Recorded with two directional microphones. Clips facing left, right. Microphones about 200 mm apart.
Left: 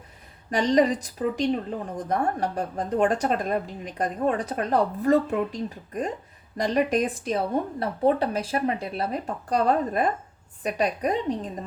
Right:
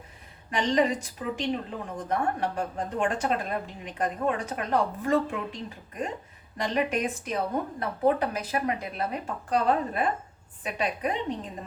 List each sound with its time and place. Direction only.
0.5 s a woman's voice: 40° left (ahead or behind)